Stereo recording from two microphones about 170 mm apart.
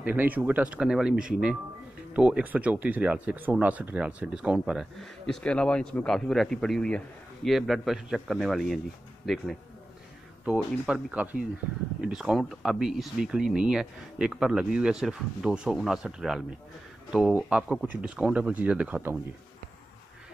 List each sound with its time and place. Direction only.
0.0 s speech: 10° right (ahead or behind)